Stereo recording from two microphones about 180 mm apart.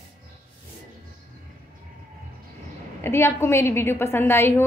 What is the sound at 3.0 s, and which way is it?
A woman's voice, 15° left (ahead or behind).